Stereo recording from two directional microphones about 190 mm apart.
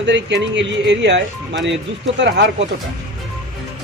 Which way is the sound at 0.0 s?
65° right (ahead or behind).